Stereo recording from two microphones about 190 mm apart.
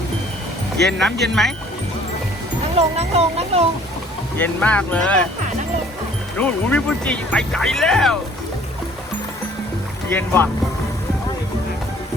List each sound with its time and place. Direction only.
0.8 s speech: centre (ahead or behind)
2.7 s speech: 35° right (ahead or behind)
4.4 s speech: 10° left (ahead or behind)
6.3 s speech: 5° left (ahead or behind)
10.1 s speech: 10° left (ahead or behind)